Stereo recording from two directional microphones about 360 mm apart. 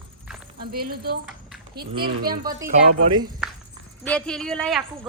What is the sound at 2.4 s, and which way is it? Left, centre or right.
Speech, centre.